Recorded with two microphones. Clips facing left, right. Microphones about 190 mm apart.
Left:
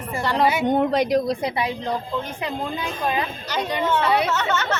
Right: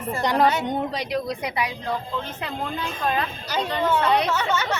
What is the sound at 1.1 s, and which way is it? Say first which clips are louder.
Speech: left 5 dB; 30° left (ahead or behind).